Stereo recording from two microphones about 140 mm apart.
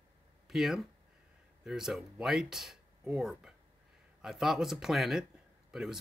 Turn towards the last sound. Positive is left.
turn(degrees=-5)  # may be behind; listen again after turning